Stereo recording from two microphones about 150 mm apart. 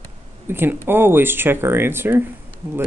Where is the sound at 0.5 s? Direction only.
15° right (ahead or behind).